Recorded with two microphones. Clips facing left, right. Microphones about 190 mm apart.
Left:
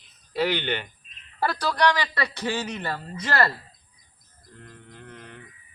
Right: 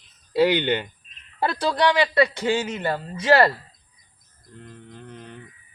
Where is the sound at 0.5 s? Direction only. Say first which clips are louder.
Right 5 dB; 15° right (ahead or behind).